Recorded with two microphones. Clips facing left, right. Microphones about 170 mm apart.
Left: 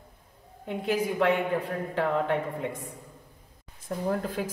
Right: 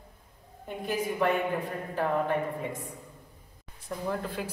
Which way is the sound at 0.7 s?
75° left (ahead or behind).